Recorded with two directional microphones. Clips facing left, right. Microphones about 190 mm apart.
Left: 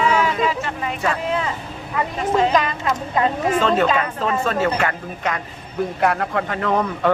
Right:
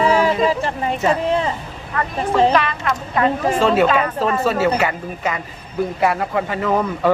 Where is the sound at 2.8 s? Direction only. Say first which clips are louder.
Right 1 dB; 20° left (ahead or behind).